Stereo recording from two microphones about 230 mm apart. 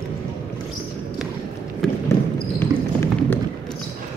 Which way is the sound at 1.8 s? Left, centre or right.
Centre.